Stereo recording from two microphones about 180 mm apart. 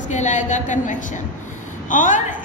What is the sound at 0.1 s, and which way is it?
A woman's voice, 45° left (ahead or behind).